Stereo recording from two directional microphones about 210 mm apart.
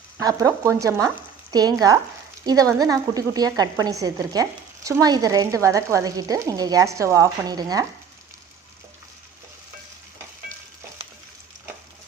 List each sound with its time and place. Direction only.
0.2 s a woman's voice: 15° right (ahead or behind)